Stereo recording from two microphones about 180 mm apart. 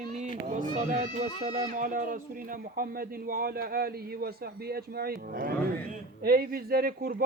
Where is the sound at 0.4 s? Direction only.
45° right (ahead or behind).